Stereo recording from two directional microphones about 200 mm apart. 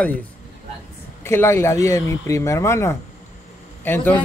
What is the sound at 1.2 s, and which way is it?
A man's voice, 15° left (ahead or behind).